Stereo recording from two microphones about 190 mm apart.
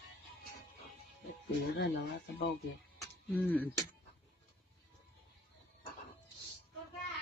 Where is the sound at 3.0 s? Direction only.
10° left (ahead or behind).